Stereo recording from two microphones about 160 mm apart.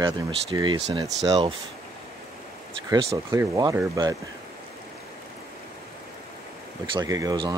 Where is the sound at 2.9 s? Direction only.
20° right (ahead or behind).